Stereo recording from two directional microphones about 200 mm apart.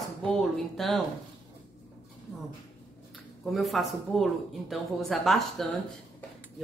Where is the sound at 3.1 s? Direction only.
Centre (ahead or behind).